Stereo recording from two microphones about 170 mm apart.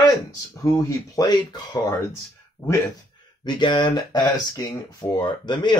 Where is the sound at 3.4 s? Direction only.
25° left (ahead or behind).